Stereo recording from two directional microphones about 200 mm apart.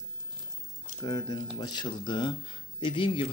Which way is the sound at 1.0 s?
20° left (ahead or behind).